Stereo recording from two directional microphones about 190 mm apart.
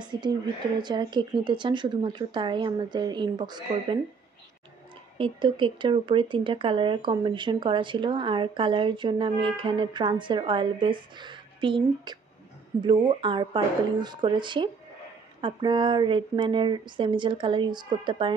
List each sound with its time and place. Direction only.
0.0 s a sound: 25° right (ahead or behind)
0.7 s speech: 25° right (ahead or behind)
5.1 s speech: 25° right (ahead or behind)